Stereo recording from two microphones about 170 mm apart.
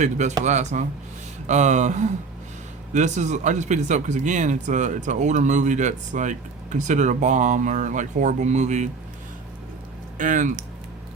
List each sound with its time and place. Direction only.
0.0 s speech: 45° right (ahead or behind)
10.2 s speech: 50° right (ahead or behind)